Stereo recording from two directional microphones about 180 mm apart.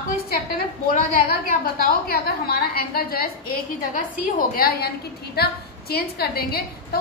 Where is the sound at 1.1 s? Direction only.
55° left (ahead or behind).